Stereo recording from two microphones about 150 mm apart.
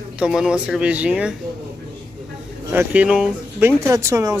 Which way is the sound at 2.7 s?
10° right (ahead or behind).